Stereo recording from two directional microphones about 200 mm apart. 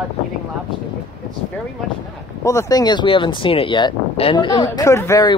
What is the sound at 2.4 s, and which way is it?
Speech, 15° left (ahead or behind).